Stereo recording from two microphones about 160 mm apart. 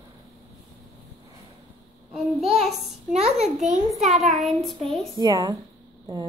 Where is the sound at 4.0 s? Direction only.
Centre (ahead or behind).